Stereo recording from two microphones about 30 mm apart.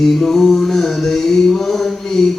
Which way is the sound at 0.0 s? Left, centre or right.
Centre.